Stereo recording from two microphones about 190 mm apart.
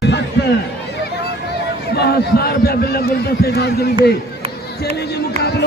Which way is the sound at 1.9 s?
55° left (ahead or behind).